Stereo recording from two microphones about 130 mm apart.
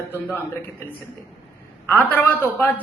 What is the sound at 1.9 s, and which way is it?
Speech, 15° left (ahead or behind).